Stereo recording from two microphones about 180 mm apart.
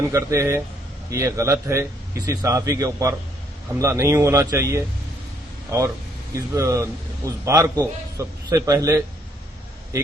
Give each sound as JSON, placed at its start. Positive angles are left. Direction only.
{"t": 0.1, "sound": "a man's voice", "side_deg": -15}